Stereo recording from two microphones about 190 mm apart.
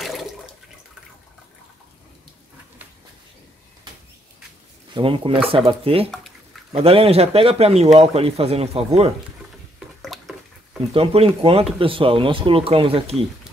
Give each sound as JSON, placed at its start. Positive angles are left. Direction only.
{"t": 0.0, "sound": "toilet flush", "side_deg": 0}
{"t": 4.9, "sound": "speech", "side_deg": -25}
{"t": 9.8, "sound": "drip", "side_deg": 0}
{"t": 10.9, "sound": "speech", "side_deg": -30}